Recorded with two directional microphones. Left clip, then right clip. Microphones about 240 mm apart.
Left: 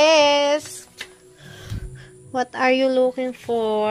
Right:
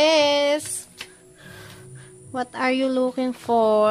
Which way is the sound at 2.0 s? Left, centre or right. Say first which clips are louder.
Left 4 dB; centre.